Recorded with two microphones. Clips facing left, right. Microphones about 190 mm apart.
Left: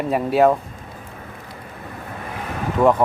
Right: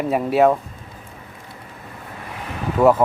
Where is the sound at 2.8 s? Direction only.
5° right (ahead or behind).